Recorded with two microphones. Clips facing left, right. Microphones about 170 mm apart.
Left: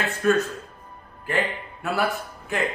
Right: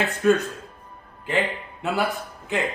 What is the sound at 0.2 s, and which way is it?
A man's voice, 20° right (ahead or behind).